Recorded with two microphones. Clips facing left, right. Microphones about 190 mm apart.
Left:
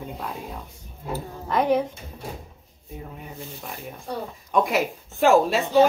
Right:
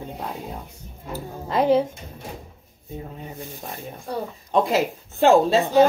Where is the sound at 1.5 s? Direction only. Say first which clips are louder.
Right 3 dB; 25° right (ahead or behind).